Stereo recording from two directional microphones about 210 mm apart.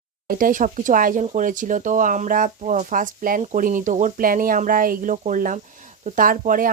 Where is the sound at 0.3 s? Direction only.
40° right (ahead or behind).